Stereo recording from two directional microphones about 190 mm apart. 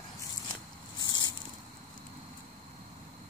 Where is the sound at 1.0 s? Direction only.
20° left (ahead or behind).